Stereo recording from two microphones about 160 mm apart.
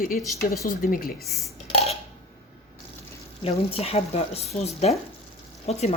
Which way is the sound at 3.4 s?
40° left (ahead or behind).